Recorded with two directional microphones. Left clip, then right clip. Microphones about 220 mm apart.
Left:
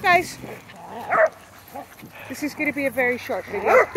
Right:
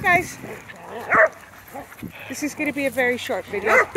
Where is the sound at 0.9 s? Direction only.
40° right (ahead or behind).